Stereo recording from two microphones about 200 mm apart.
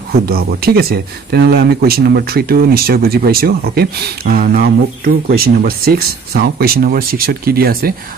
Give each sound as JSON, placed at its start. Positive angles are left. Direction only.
{"t": 0.3, "sound": "speech", "side_deg": -50}